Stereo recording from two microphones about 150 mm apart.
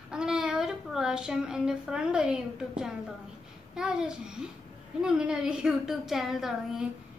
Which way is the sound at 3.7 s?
5° right (ahead or behind).